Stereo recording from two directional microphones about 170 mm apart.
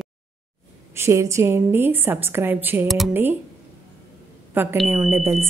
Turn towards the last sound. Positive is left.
turn(degrees=-15)  # may be behind; listen again after turning